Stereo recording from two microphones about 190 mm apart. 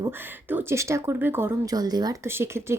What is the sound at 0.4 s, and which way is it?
Speech, 10° right (ahead or behind).